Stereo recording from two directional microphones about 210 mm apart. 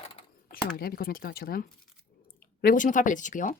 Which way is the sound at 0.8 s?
45° left (ahead or behind).